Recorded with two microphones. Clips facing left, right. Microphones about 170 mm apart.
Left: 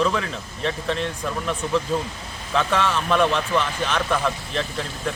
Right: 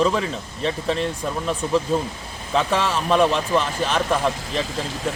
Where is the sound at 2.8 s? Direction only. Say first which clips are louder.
Right 2 dB; 35° right (ahead or behind).